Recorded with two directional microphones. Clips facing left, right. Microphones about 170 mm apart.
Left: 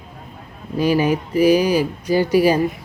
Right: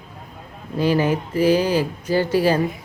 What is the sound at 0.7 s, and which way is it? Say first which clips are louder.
Speech: left 2 dB; 15° left (ahead or behind).